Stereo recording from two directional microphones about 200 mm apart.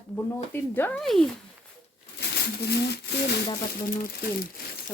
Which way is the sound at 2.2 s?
55° left (ahead or behind).